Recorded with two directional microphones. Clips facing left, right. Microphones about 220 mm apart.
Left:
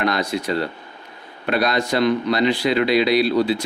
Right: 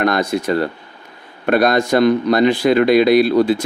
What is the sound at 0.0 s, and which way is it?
Speech, 50° right (ahead or behind).